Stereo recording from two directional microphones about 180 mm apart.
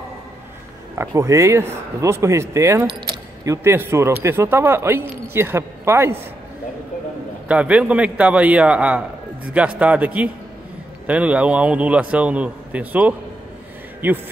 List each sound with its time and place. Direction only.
0.9 s a man's voice: 15° right (ahead or behind)
7.4 s a man's voice: 5° right (ahead or behind)